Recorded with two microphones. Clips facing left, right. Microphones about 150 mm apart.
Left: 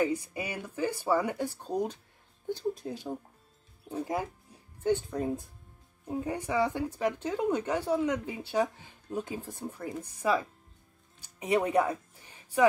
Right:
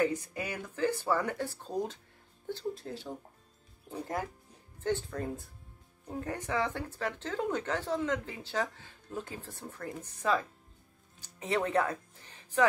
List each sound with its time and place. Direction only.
0.0 s speech: 10° left (ahead or behind)
4.8 s speech: 15° left (ahead or behind)
11.1 s music: 15° left (ahead or behind)